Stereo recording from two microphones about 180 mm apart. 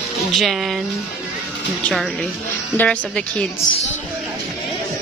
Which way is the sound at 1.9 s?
Centre (ahead or behind).